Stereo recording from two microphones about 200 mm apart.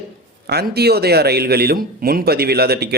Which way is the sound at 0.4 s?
50° right (ahead or behind).